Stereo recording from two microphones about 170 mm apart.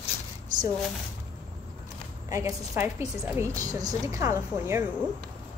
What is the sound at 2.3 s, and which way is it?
A woman's voice, 15° right (ahead or behind).